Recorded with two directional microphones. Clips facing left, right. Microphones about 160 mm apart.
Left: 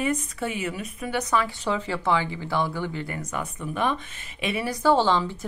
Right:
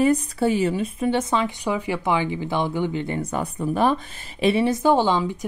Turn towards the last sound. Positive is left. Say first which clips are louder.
# right 2 dB
turn(degrees=-15)  # may be behind; listen again after turning